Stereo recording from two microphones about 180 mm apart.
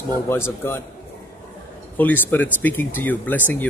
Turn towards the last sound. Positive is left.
turn(degrees=10)  # may be behind; listen again after turning